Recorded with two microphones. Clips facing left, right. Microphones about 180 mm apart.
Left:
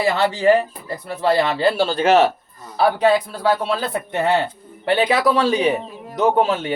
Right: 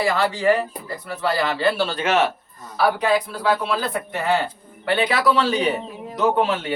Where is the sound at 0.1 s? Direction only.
25° left (ahead or behind).